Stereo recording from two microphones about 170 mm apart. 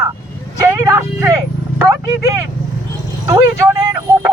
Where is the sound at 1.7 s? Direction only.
20° right (ahead or behind).